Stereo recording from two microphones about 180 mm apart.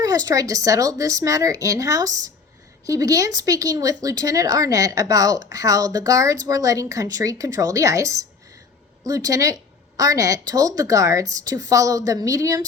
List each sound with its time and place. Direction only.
0.0 s a woman's voice: 20° right (ahead or behind)